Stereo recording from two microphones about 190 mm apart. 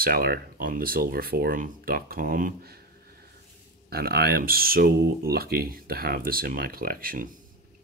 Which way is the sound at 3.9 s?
55° right (ahead or behind).